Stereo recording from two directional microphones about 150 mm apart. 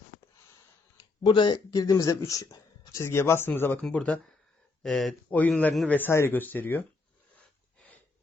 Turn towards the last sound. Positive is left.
turn(degrees=10)  # may be behind; listen again after turning